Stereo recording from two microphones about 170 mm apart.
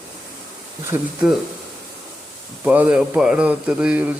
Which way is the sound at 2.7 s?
10° right (ahead or behind).